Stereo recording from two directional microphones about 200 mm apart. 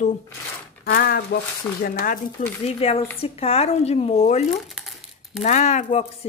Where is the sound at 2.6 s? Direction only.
30° left (ahead or behind).